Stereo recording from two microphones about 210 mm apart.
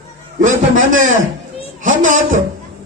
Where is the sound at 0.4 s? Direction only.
40° right (ahead or behind).